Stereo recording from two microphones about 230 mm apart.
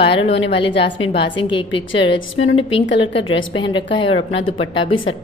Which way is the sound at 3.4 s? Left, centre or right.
Left.